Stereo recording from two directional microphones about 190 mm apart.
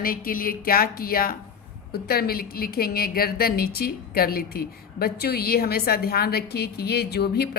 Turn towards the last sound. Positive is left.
turn(degrees=60)  # may be behind; listen again after turning